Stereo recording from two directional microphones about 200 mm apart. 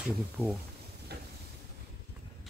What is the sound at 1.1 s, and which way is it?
Vehicle, 55° right (ahead or behind).